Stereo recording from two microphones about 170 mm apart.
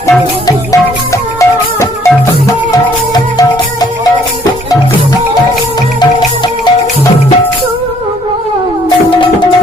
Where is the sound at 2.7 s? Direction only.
25° left (ahead or behind).